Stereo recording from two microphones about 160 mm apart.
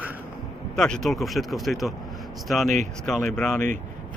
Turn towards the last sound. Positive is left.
turn(degrees=5)  # may be behind; listen again after turning